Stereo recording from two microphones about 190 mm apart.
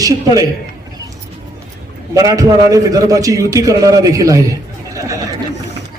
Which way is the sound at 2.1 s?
20° right (ahead or behind).